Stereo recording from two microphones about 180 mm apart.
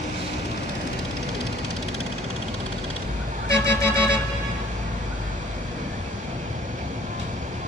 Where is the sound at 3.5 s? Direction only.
15° left (ahead or behind).